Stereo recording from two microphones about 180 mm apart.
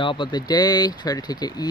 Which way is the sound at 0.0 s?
25° left (ahead or behind).